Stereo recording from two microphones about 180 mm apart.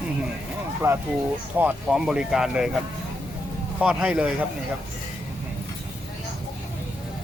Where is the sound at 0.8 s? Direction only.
15° right (ahead or behind).